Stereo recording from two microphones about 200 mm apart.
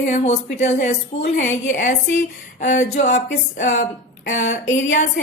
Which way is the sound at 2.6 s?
35° left (ahead or behind).